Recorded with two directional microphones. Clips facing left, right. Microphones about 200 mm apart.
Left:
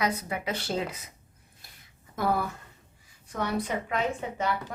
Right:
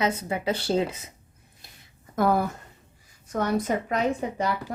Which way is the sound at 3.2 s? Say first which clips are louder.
Right 5 dB; 45° right (ahead or behind).